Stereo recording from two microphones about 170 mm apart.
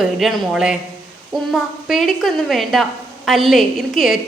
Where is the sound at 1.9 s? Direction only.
Centre (ahead or behind).